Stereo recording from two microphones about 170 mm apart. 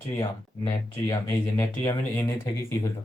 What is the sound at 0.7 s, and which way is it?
Speech, 20° left (ahead or behind).